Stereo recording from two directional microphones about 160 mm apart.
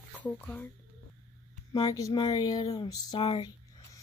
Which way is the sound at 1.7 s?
25° left (ahead or behind).